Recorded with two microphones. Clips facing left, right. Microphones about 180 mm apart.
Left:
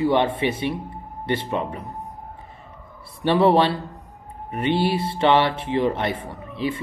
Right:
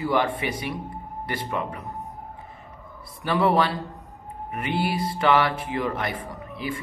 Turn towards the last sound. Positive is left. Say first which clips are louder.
# left 5 dB
turn(degrees=25)  # may be behind; listen again after turning